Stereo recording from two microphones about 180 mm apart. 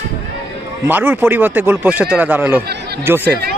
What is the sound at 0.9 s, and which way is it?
Speech, 10° right (ahead or behind).